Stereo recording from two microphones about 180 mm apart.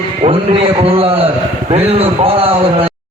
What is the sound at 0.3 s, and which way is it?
A man's voice, 30° right (ahead or behind).